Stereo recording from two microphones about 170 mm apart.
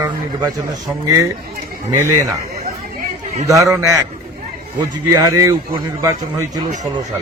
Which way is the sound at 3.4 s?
20° right (ahead or behind).